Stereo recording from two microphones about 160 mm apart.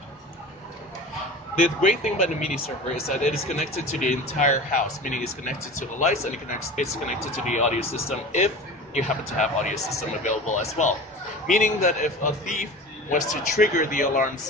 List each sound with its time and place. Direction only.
1.5 s speech: 55° left (ahead or behind)
8.9 s speech: 50° left (ahead or behind)